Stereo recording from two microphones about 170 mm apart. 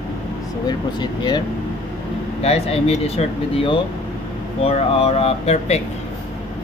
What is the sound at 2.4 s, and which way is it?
Speech, 35° left (ahead or behind).